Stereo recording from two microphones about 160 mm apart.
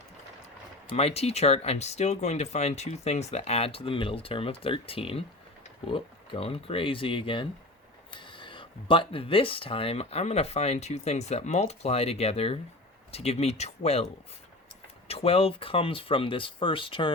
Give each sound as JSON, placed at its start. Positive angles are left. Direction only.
{"t": 0.9, "sound": "speech", "side_deg": 40}